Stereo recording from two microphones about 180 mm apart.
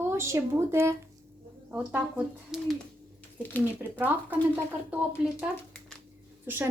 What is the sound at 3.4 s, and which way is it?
Speech, 10° left (ahead or behind).